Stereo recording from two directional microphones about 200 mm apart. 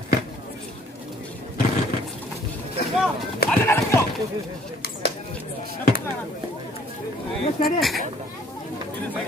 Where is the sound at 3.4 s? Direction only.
10° left (ahead or behind).